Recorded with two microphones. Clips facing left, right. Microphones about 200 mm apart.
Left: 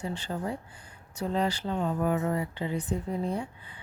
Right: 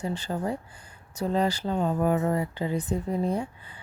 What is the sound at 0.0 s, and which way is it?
Speech, 40° right (ahead or behind).